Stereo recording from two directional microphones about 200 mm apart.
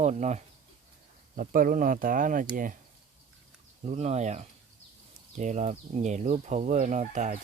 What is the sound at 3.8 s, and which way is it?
Speech, 35° right (ahead or behind).